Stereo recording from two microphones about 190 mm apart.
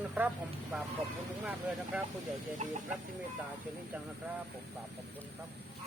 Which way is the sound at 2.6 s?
35° right (ahead or behind).